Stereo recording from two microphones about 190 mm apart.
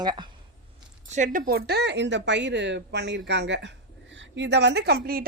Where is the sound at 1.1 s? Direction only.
40° right (ahead or behind).